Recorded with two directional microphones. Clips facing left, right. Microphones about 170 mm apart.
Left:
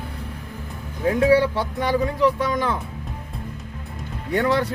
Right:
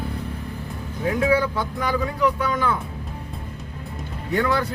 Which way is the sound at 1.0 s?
35° left (ahead or behind).